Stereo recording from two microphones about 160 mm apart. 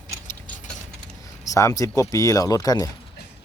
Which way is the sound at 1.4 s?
20° left (ahead or behind).